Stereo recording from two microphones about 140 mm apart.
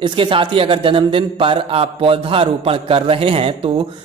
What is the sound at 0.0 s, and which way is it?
A man's voice, 40° right (ahead or behind).